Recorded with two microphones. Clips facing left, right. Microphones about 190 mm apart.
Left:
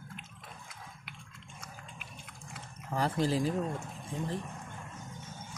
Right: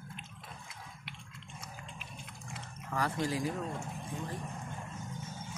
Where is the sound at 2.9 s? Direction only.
30° left (ahead or behind).